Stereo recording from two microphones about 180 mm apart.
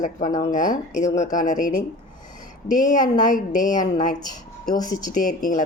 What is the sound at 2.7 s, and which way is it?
Speech, 45° left (ahead or behind).